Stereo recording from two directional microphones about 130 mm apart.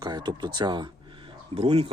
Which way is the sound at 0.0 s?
30° right (ahead or behind).